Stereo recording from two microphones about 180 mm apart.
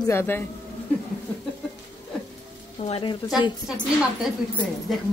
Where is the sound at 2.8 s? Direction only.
30° left (ahead or behind).